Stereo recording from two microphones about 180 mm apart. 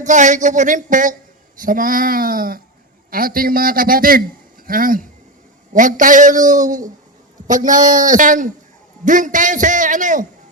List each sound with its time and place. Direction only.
0.0 s a man's voice: 45° right (ahead or behind)